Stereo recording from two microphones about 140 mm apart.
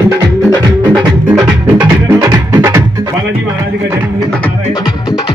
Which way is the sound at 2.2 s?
25° right (ahead or behind).